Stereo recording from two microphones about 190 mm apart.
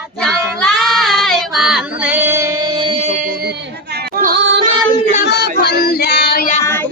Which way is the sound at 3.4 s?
55° right (ahead or behind).